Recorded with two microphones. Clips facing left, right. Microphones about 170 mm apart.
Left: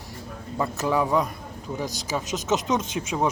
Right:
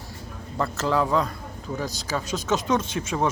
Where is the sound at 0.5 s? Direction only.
15° left (ahead or behind).